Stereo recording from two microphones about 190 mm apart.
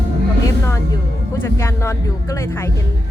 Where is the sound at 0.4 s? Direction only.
15° left (ahead or behind).